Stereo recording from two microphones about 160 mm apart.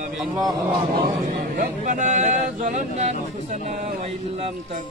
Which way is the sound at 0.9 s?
65° right (ahead or behind).